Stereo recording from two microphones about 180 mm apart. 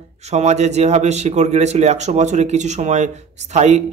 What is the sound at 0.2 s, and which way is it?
Speech, 40° right (ahead or behind).